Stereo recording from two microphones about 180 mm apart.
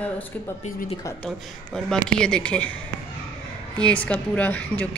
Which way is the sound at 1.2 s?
5° left (ahead or behind).